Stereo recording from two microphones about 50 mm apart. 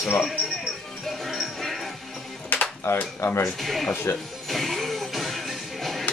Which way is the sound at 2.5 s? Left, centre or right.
Left.